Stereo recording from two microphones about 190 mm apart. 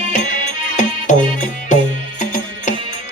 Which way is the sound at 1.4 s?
40° left (ahead or behind).